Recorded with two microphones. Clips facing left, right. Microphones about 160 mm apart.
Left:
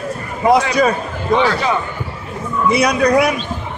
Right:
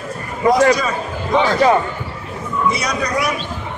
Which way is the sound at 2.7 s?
60° left (ahead or behind).